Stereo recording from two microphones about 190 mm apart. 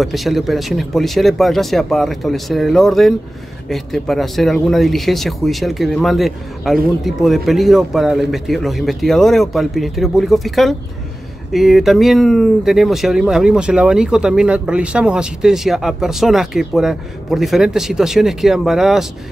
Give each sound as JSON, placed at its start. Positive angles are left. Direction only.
{"t": 0.0, "sound": "speech", "side_deg": 0}